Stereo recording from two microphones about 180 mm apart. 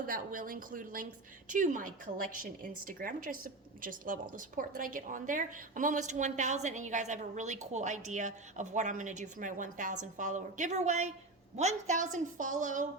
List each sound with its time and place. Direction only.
0.0 s a woman's voice: 50° right (ahead or behind)